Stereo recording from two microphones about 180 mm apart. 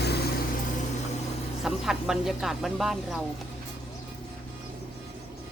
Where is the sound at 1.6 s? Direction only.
Centre (ahead or behind).